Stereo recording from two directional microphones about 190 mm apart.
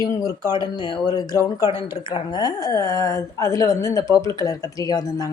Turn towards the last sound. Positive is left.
turn(degrees=20)  # may be behind; listen again after turning